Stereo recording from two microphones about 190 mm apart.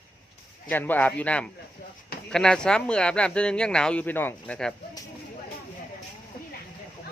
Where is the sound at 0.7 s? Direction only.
10° left (ahead or behind).